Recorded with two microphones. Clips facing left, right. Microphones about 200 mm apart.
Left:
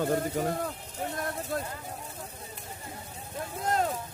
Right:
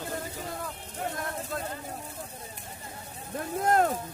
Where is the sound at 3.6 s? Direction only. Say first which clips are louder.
Right 4 dB; 55° right (ahead or behind).